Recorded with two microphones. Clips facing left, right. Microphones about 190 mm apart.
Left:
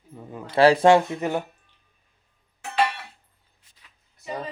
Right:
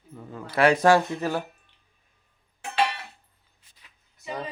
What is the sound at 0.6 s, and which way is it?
Speech, 30° left (ahead or behind).